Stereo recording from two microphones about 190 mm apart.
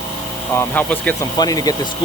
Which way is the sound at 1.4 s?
20° left (ahead or behind).